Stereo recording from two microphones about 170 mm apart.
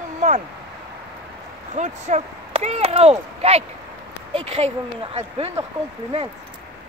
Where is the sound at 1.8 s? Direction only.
40° right (ahead or behind).